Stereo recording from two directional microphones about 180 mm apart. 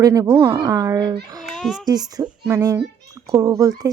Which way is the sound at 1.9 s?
20° right (ahead or behind).